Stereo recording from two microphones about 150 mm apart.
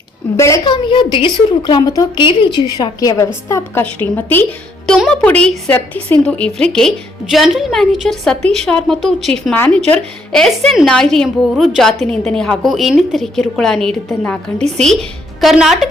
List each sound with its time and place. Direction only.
0.3 s a woman's voice: 20° left (ahead or behind)
0.6 s a woman's voice: 35° left (ahead or behind)
3.5 s a woman's voice: 10° left (ahead or behind)
15.4 s a woman's voice: centre (ahead or behind)